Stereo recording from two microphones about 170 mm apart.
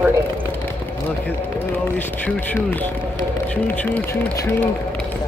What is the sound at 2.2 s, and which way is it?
Speech, 10° left (ahead or behind).